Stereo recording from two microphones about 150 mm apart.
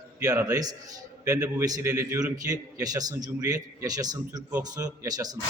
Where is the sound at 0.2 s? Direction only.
25° right (ahead or behind).